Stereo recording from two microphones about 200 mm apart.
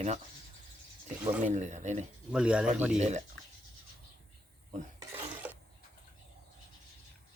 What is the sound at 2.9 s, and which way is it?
Speech, 35° right (ahead or behind).